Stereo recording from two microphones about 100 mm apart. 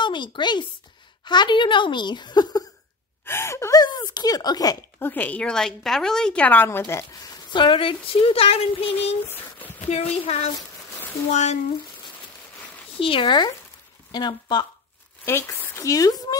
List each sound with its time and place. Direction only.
0.0 s speech: 50° left (ahead or behind)
3.3 s speech: 25° left (ahead or behind)
3.8 s speech: 45° left (ahead or behind)
4.9 s a woman's voice: 20° left (ahead or behind)
7.2 s a sound: 40° left (ahead or behind)
7.6 s a woman's voice: 60° left (ahead or behind); by 10.5 s 90° left
13.0 s speech: 60° left (ahead or behind)
15.2 s a woman's voice: 25° left (ahead or behind)
15.8 s speech: 35° left (ahead or behind)